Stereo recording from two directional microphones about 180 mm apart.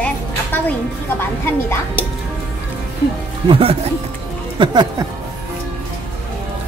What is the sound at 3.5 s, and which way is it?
Speech, 30° right (ahead or behind).